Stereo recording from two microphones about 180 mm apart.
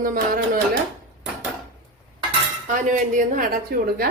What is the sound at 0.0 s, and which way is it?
Speech, 50° right (ahead or behind).